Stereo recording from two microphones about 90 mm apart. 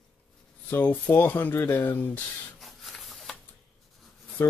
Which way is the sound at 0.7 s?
20° left (ahead or behind).